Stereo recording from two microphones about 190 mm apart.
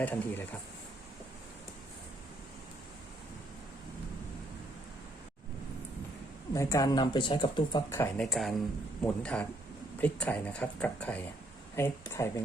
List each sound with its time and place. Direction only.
0.0 s speech: 10° left (ahead or behind)
6.5 s speech: 15° left (ahead or behind)
7.9 s speech: 15° left (ahead or behind)
8.2 s speech: centre (ahead or behind)